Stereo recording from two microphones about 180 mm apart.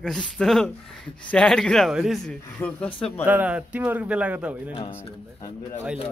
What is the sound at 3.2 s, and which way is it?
A man's voice, 10° right (ahead or behind).